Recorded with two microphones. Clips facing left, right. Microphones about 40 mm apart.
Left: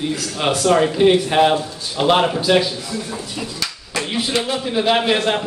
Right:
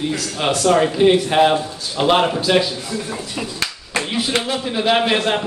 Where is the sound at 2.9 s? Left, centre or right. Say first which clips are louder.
Right 1 dB; right.